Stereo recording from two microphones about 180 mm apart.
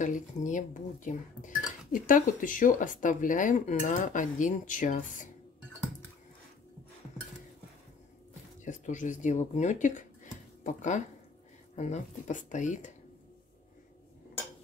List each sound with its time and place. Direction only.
0.0 s speech: 45° left (ahead or behind)
8.6 s speech: 45° left (ahead or behind)